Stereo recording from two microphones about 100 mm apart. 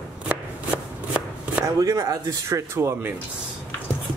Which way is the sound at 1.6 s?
40° right (ahead or behind).